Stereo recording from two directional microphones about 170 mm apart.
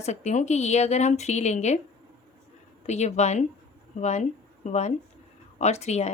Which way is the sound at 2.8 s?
40° left (ahead or behind).